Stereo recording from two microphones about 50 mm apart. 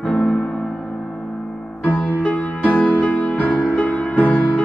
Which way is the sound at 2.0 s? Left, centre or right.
Left.